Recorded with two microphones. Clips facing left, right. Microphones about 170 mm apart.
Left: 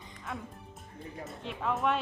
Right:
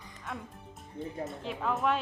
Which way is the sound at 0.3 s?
Centre (ahead or behind).